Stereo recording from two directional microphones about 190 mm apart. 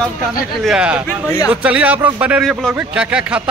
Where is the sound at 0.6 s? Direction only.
5° right (ahead or behind).